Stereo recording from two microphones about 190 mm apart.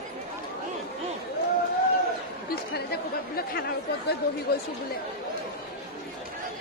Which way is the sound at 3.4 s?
55° left (ahead or behind).